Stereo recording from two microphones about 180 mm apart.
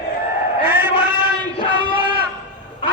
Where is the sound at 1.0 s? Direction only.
10° right (ahead or behind).